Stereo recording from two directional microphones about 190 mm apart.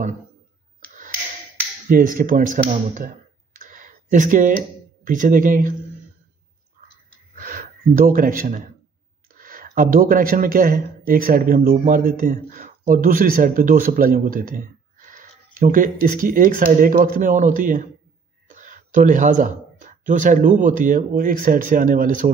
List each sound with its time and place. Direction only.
1.9 s speech: 50° right (ahead or behind)
3.5 s a sound: 45° right (ahead or behind)
7.3 s gasp: 45° right (ahead or behind)
9.4 s speech: 50° right (ahead or behind)